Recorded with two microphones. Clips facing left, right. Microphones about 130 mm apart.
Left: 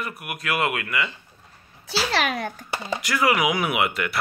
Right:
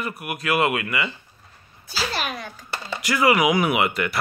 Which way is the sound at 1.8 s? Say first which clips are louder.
Left 4 dB; 80° left.